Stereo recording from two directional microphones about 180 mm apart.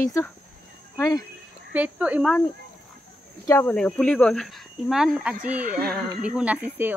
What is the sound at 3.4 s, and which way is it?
Speech, 15° left (ahead or behind).